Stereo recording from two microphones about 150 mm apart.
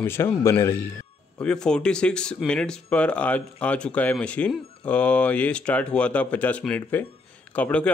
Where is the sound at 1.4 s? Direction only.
5° left (ahead or behind).